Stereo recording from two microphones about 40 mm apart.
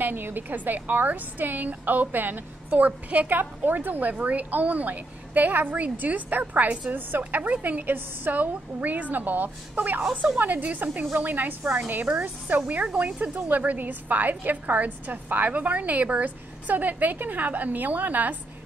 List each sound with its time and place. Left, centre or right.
0.0 s a woman's voice: right
2.8 s a woman's voice: right
6.9 s a woman's voice: right
7.9 s a woman's voice: right
8.4 s a woman's voice: right
10.2 s a woman's voice: right